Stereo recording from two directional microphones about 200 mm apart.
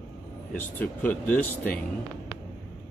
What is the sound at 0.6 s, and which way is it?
Speech, 10° left (ahead or behind).